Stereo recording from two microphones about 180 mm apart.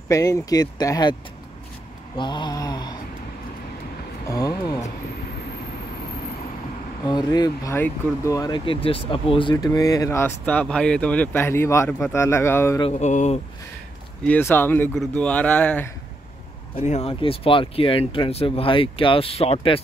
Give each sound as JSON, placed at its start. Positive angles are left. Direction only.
{"t": 0.1, "sound": "speech", "side_deg": 20}
{"t": 2.1, "sound": "speech", "side_deg": 25}
{"t": 4.3, "sound": "a sound", "side_deg": 20}
{"t": 7.1, "sound": "speech", "side_deg": 25}
{"t": 12.8, "sound": "speech", "side_deg": 40}
{"t": 14.2, "sound": "speech", "side_deg": 10}
{"t": 16.7, "sound": "speech", "side_deg": 40}